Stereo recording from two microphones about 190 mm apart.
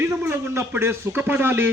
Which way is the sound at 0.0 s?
10° right (ahead or behind).